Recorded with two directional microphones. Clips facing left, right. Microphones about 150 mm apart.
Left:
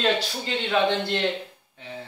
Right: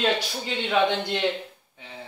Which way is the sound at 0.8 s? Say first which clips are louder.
Left 1 dB; 10° right (ahead or behind).